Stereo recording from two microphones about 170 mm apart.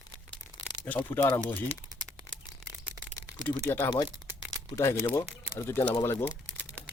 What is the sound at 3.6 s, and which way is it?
Speech, 15° left (ahead or behind).